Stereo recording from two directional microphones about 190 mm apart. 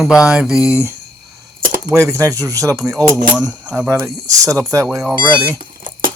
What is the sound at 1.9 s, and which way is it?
Speech, 15° right (ahead or behind).